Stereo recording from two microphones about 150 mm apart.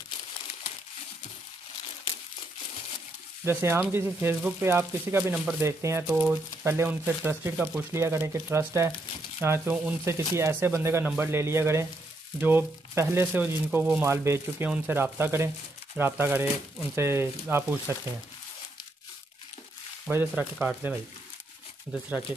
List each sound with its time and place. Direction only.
3.4 s speech: 15° right (ahead or behind)
5.6 s speech: 20° right (ahead or behind)
20.1 s speech: 10° right (ahead or behind)